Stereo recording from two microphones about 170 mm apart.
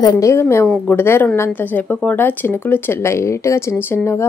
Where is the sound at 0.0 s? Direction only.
20° left (ahead or behind).